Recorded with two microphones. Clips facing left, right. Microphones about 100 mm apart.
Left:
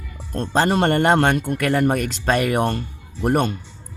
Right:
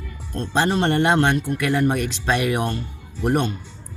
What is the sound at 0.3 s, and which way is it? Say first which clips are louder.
A man's voice: left 2 dB; 50° left (ahead or behind).